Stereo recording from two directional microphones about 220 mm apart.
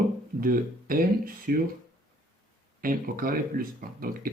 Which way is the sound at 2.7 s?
40° right (ahead or behind).